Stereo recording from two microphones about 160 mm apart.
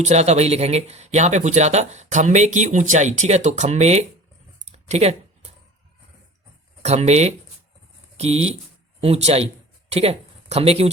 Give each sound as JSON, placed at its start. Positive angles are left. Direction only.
{"t": 0.0, "sound": "speech", "side_deg": -45}
{"t": 4.6, "sound": "a sound", "side_deg": -45}
{"t": 6.8, "sound": "speech", "side_deg": -45}